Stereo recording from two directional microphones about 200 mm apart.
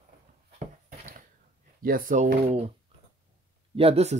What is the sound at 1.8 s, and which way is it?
Speech, 45° right (ahead or behind).